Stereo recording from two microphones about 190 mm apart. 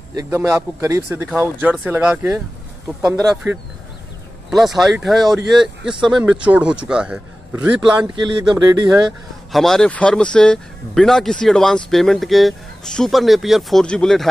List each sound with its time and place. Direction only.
0.1 s speech: 15° right (ahead or behind)
4.5 s speech: centre (ahead or behind)
8.2 s speech: 20° right (ahead or behind)
9.5 s speech: centre (ahead or behind)